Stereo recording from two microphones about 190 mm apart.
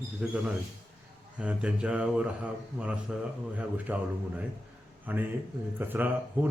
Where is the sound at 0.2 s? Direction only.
5° right (ahead or behind).